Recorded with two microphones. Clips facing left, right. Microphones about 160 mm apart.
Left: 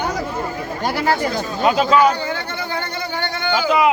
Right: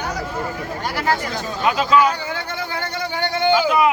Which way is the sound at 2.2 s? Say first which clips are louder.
Left 2 dB; 10° right (ahead or behind).